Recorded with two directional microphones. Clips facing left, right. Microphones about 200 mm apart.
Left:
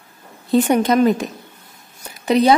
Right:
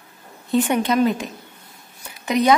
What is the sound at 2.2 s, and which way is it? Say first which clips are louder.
Speech: left 4 dB; 30° left (ahead or behind).